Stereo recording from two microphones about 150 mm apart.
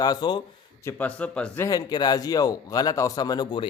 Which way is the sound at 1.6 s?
25° left (ahead or behind).